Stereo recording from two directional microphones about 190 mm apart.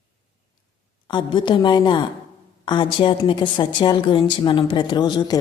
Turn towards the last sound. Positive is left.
turn(degrees=25)  # may be behind; listen again after turning